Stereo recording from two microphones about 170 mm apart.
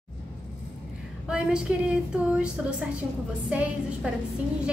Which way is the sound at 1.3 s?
5° right (ahead or behind).